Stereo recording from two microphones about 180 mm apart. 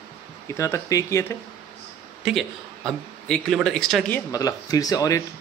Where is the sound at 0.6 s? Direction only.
15° left (ahead or behind).